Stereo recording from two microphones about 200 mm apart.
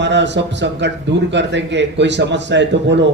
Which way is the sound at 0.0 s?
60° right (ahead or behind).